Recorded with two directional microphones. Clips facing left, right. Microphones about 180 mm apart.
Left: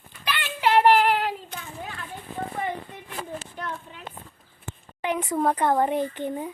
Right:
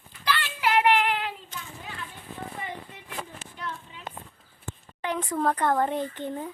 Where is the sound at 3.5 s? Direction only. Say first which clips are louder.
Left 3 dB; 50° left (ahead or behind).